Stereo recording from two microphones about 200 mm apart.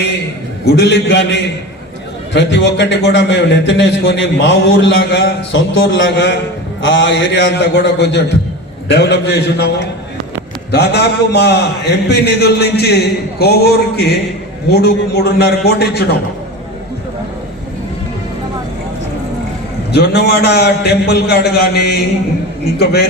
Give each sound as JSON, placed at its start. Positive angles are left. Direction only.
{"t": 0.8, "sound": "a man's voice", "side_deg": 60}
{"t": 19.9, "sound": "a man's voice", "side_deg": 55}
{"t": 22.8, "sound": "a man's voice", "side_deg": 55}